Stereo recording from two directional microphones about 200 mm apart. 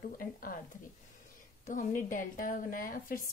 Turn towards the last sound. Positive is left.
turn(degrees=45)  # may be behind; listen again after turning